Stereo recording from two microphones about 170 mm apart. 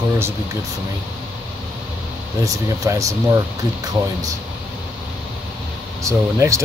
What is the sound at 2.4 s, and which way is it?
Speech, 20° right (ahead or behind).